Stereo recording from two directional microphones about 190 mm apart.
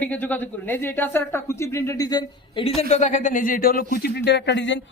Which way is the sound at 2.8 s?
35° left (ahead or behind).